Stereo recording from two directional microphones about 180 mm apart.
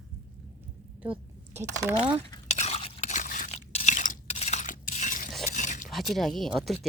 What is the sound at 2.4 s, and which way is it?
Crunch, 40° left (ahead or behind).